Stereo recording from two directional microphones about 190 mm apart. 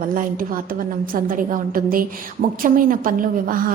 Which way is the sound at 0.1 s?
45° right (ahead or behind).